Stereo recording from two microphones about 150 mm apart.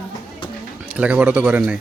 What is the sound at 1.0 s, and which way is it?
Speech, 10° right (ahead or behind).